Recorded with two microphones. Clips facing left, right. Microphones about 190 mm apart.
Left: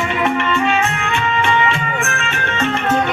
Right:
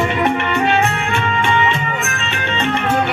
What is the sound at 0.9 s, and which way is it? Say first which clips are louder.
Music: even; 30° right (ahead or behind).